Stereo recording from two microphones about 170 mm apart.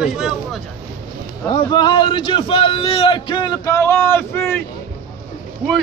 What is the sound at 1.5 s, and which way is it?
A man's voice, 25° left (ahead or behind).